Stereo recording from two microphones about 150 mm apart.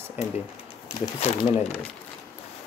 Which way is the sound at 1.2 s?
45° left (ahead or behind).